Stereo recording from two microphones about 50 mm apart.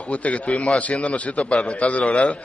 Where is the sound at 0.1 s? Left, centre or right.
Left.